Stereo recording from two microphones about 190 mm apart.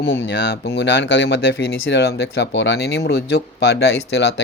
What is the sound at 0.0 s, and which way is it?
Speech, 70° left (ahead or behind).